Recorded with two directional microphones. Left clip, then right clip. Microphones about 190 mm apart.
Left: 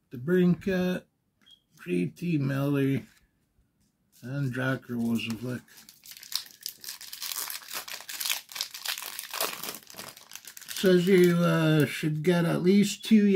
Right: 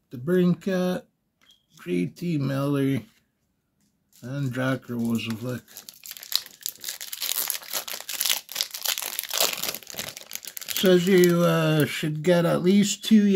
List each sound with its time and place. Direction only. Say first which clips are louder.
0.1 s speech: right 2 dB; 30° right (ahead or behind)
4.2 s speech: right 3 dB; 30° right (ahead or behind)
6.0 s crumpling: right 7 dB; 45° right (ahead or behind)
10.8 s speech: right 3 dB; 35° right (ahead or behind)